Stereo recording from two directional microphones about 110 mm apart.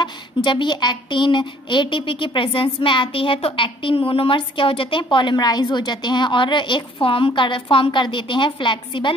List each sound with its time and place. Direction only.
0.0 s a woman's voice: 45° left (ahead or behind)